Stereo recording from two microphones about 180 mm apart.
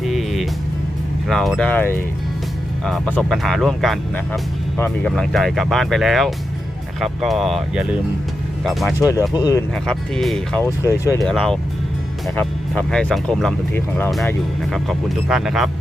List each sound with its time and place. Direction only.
0.0 s music: centre (ahead or behind)
1.3 s speech: 5° left (ahead or behind)
9.0 s speech: 15° left (ahead or behind)
9.7 s speech: 5° left (ahead or behind)
10.6 s speech: 15° left (ahead or behind)
11.2 s speech: 5° left (ahead or behind)